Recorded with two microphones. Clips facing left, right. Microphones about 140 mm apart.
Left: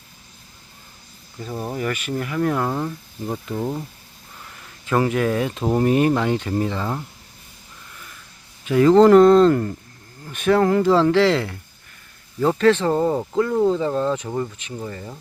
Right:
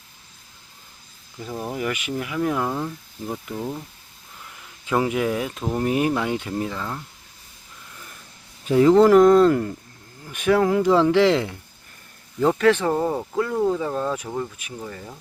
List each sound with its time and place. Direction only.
1.5 s speech: 5° left (ahead or behind)
1.7 s speech: 10° right (ahead or behind)
2.6 s speech: 5° left (ahead or behind)
4.9 s speech: 15° right (ahead or behind)
8.7 s speech: 15° right (ahead or behind)
12.5 s speech: 10° right (ahead or behind)